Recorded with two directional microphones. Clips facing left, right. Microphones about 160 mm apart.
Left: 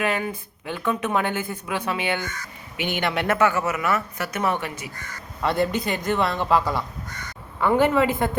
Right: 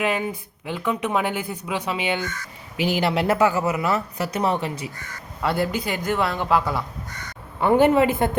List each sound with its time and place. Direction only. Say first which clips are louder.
0.0 s speech: right 1 dB; 15° right (ahead or behind)
2.7 s speech: right 4 dB; 35° right (ahead or behind)
5.4 s a man's voice: left 1 dB; 5° right (ahead or behind)
7.6 s a woman's voice: right 3 dB; 25° right (ahead or behind)